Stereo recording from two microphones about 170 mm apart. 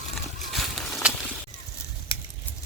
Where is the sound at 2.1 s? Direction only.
30° left (ahead or behind).